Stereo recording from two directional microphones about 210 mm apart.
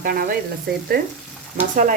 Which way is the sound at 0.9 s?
50° right (ahead or behind).